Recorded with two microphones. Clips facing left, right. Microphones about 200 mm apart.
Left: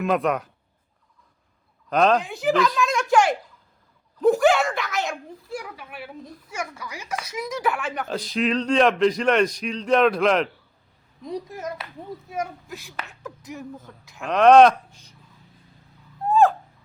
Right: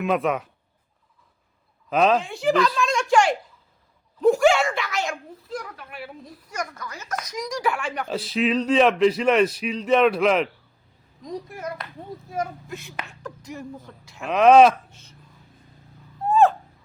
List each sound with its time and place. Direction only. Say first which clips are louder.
0.0 s speech: even; centre (ahead or behind)
1.9 s speech: even; 5° right (ahead or behind)
6.6 s speech: right 1 dB; 10° left (ahead or behind)
11.3 s a child's voice: left 1 dB; 15° left (ahead or behind)
12.3 s speech: right 2 dB; centre (ahead or behind)
16.2 s a sound: even; centre (ahead or behind)